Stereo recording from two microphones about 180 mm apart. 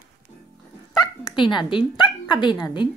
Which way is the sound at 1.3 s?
25° left (ahead or behind).